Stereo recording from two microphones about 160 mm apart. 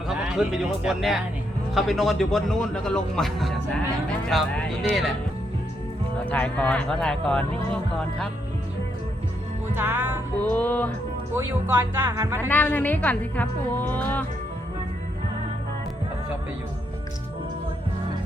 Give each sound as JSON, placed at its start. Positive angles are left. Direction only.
{"t": 0.1, "sound": "a man's voice", "side_deg": -5}
{"t": 6.3, "sound": "speech", "side_deg": 10}
{"t": 9.7, "sound": "speech", "side_deg": -15}
{"t": 10.5, "sound": "speech", "side_deg": 10}
{"t": 11.3, "sound": "speech", "side_deg": -15}
{"t": 12.5, "sound": "speech", "side_deg": 10}